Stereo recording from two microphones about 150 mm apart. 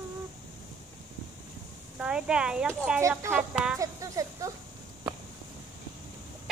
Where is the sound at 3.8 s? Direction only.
20° right (ahead or behind).